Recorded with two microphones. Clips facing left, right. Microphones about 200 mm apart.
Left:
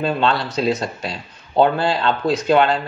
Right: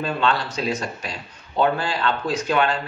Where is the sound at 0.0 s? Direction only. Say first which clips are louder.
Left 3 dB; 30° left (ahead or behind).